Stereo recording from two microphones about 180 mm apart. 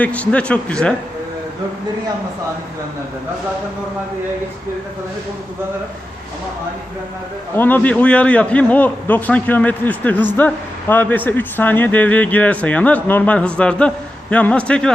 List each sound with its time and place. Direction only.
0.0 s speech: 10° left (ahead or behind)
7.5 s a man's voice: 10° left (ahead or behind)